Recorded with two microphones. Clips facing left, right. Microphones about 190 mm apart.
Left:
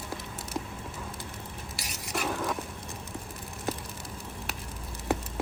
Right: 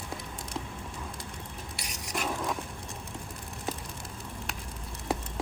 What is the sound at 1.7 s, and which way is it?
Stir, 5° left (ahead or behind).